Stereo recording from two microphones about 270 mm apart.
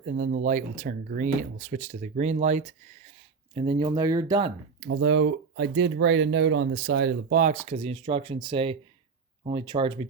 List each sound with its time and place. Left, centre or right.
0.0 s speech: right
4.8 s speech: right; by 10.1 s centre